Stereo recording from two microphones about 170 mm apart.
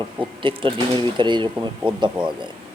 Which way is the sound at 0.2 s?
30° right (ahead or behind).